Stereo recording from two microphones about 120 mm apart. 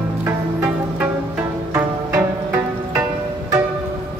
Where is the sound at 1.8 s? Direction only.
15° right (ahead or behind).